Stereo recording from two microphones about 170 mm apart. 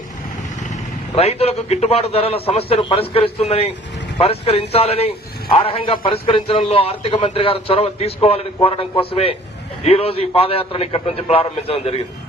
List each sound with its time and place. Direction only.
1.1 s a man's voice: 35° left (ahead or behind)